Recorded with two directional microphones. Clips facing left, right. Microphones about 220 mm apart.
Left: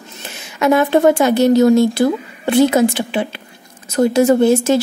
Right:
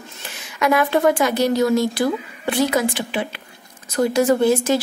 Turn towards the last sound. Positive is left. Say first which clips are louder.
# left 4 dB
turn(degrees=25)  # may be behind; listen again after turning